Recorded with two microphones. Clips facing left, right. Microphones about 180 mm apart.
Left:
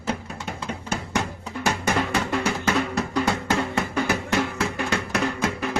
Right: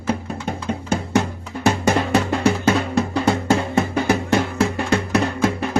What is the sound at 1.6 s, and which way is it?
Music, 30° right (ahead or behind).